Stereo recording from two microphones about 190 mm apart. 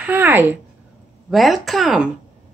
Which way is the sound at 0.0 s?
10° right (ahead or behind).